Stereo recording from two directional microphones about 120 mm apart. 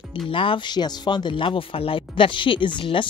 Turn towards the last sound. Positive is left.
turn(degrees=45)  # may be behind; listen again after turning